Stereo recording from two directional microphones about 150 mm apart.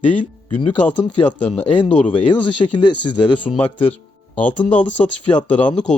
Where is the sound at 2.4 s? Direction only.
30° left (ahead or behind).